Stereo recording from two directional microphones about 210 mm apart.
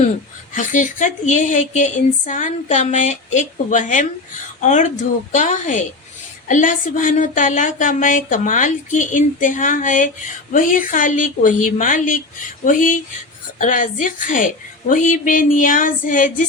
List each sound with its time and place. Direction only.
0.5 s speech: 40° left (ahead or behind)